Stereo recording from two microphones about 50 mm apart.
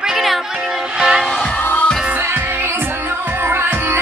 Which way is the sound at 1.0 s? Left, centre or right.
Centre.